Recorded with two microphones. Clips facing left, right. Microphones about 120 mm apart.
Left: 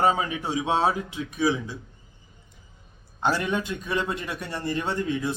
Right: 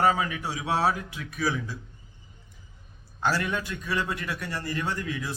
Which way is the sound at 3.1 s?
20° left (ahead or behind).